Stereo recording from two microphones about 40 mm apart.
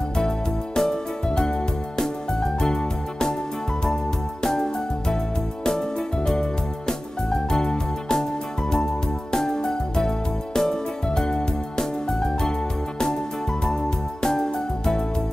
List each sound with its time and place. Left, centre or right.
0.7 s music: centre
9.3 s music: centre
13.7 s music: centre